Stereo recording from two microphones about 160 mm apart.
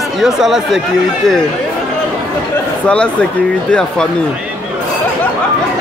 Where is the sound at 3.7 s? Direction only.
5° left (ahead or behind).